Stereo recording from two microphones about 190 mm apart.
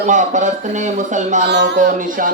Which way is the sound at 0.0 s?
40° right (ahead or behind).